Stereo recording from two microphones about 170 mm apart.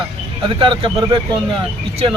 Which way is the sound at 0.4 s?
30° right (ahead or behind).